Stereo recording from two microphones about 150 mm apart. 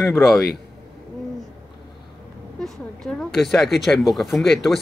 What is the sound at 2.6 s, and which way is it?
Speech, 5° left (ahead or behind).